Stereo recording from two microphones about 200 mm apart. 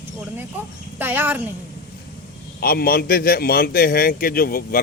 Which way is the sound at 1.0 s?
10° right (ahead or behind).